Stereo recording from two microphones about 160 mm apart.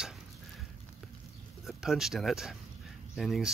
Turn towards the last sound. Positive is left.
turn(degrees=0)  # may be behind; listen again after turning